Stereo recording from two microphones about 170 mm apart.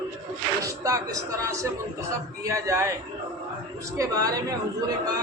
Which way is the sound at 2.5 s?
15° right (ahead or behind).